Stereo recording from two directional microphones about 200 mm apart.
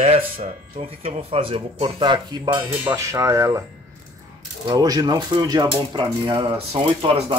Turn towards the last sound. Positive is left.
turn(degrees=-25)  # may be behind; listen again after turning